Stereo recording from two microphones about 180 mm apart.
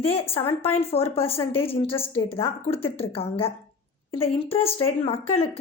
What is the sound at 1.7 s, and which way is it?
A woman's voice, 30° left (ahead or behind).